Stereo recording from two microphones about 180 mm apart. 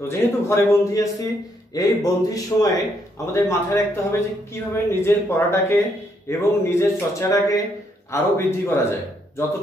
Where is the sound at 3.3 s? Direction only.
15° left (ahead or behind).